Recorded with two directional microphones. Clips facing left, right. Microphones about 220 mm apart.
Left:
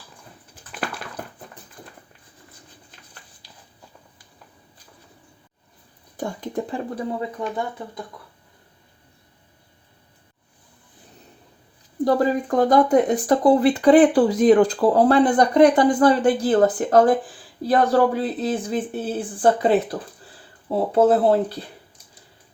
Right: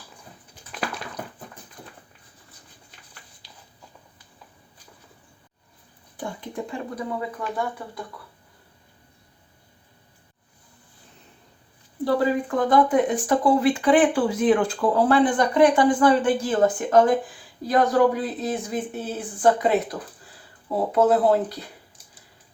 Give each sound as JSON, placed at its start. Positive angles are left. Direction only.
{"t": 0.7, "sound": "a sound", "side_deg": 5}
{"t": 6.1, "sound": "speech", "side_deg": 40}
{"t": 12.0, "sound": "speech", "side_deg": 45}